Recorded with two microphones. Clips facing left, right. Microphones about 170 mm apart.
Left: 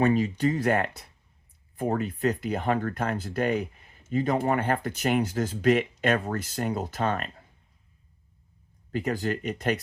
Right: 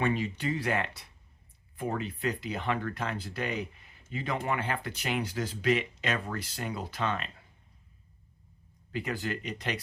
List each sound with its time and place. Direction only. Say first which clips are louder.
0.0 s speech: left 7 dB; 40° left (ahead or behind)
8.9 s speech: left 6 dB; 45° left (ahead or behind)